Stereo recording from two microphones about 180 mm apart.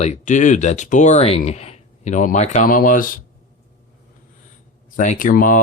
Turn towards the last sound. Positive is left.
turn(degrees=50)  # may be behind; listen again after turning